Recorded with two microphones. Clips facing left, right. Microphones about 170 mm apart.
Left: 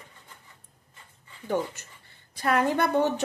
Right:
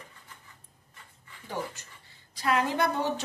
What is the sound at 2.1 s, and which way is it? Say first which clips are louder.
A woman's voice: left 2 dB; 55° left (ahead or behind).